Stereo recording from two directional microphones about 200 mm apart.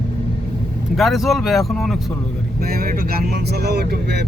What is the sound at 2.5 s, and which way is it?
Speech, 50° right (ahead or behind).